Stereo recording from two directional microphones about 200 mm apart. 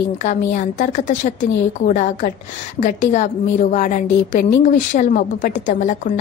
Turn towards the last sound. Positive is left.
turn(degrees=40)  # may be behind; listen again after turning